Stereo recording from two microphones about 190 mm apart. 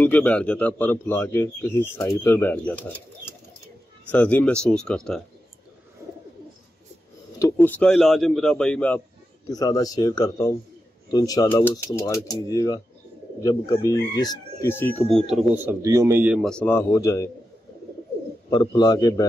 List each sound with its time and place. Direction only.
0.0 s speech: 5° left (ahead or behind)
4.1 s speech: 10° left (ahead or behind)
7.5 s speech: 5° left (ahead or behind)
9.5 s speech: 20° left (ahead or behind); by 16.3 s 10° right (ahead or behind)
16.3 s speech: 5° left (ahead or behind)
18.5 s speech: 20° left (ahead or behind)